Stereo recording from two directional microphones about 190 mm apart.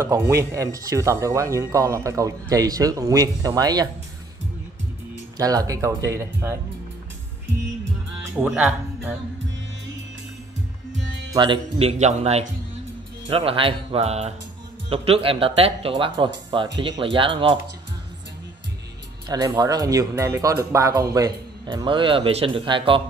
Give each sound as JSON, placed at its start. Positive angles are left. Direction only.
{"t": 0.0, "sound": "speech", "side_deg": -15}
{"t": 5.4, "sound": "speech", "side_deg": -20}
{"t": 8.4, "sound": "speech", "side_deg": -5}
{"t": 11.3, "sound": "speech", "side_deg": -25}
{"t": 19.2, "sound": "speech", "side_deg": -20}